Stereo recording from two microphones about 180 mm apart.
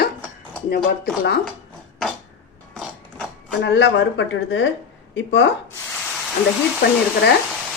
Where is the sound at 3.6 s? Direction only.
75° left (ahead or behind).